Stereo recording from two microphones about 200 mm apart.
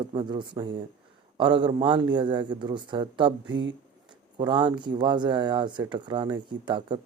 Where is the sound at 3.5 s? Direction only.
65° right (ahead or behind).